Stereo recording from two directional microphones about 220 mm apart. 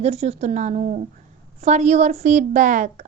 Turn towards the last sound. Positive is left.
turn(degrees=-35)  # may be behind; listen again after turning